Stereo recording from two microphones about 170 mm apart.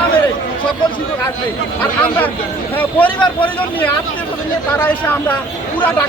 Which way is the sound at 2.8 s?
10° left (ahead or behind).